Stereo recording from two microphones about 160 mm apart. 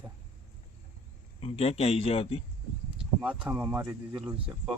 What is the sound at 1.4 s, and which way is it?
A man's voice, 40° left (ahead or behind).